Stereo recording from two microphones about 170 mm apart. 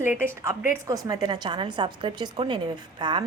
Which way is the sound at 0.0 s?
15° right (ahead or behind).